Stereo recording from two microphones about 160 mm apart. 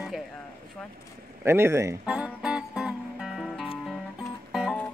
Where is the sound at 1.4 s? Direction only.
15° right (ahead or behind).